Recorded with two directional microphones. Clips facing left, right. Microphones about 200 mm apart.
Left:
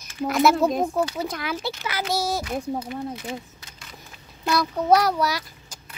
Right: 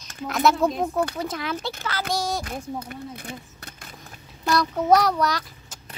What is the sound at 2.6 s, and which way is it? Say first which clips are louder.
Speech: left 4 dB; 35° left (ahead or behind).